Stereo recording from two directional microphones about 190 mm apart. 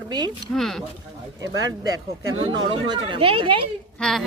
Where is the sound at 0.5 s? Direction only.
Centre (ahead or behind).